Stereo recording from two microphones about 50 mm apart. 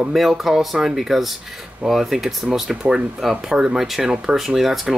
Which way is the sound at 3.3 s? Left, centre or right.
Centre.